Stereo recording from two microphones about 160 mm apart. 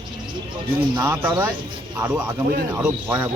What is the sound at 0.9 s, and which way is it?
Speech, 10° right (ahead or behind).